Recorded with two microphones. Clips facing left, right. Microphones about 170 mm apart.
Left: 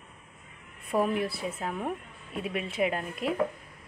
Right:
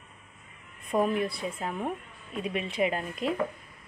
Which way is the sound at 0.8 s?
5° left (ahead or behind).